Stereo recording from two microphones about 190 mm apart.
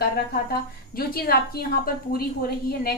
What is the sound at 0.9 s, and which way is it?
A woman's voice, 50° left (ahead or behind).